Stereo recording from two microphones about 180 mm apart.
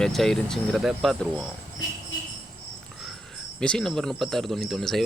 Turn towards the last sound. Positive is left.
turn(degrees=0)  # may be behind; listen again after turning